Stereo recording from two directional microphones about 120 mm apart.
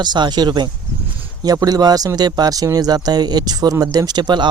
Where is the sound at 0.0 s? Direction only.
40° right (ahead or behind).